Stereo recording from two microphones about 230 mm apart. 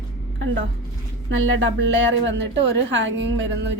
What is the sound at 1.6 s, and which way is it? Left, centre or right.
A woman's voice, right.